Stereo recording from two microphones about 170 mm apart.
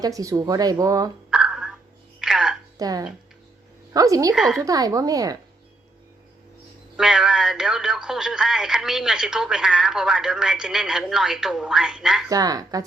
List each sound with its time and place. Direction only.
0.0 s speech: 20° right (ahead or behind)
1.3 s a sound: 5° right (ahead or behind)
2.2 s music: 5° right (ahead or behind)
2.7 s speech: 20° right (ahead or behind)
4.4 s speech: centre (ahead or behind)
4.6 s speech: 20° right (ahead or behind)
6.9 s speech: 5° right (ahead or behind)
12.3 s speech: 20° right (ahead or behind)